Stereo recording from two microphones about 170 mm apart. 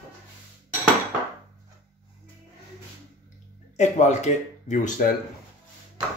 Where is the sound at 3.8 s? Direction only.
45° left (ahead or behind).